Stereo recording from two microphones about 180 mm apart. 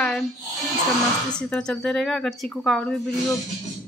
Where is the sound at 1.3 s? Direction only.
5° left (ahead or behind).